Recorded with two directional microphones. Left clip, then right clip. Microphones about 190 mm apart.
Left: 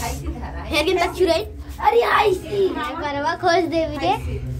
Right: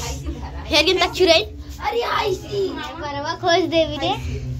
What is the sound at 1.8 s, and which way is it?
Speech, 45° left (ahead or behind).